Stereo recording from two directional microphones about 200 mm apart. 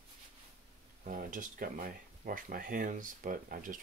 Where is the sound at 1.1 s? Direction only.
40° right (ahead or behind).